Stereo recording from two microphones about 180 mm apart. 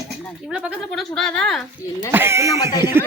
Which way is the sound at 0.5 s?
Centre (ahead or behind).